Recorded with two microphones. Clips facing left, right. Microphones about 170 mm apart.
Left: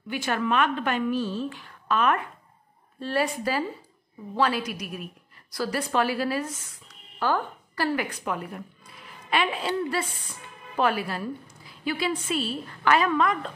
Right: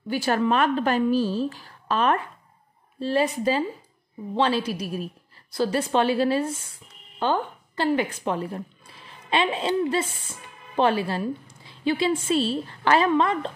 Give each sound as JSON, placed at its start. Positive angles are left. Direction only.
{"t": 0.1, "sound": "a woman's voice", "side_deg": -35}
{"t": 3.1, "sound": "a woman's voice", "side_deg": -20}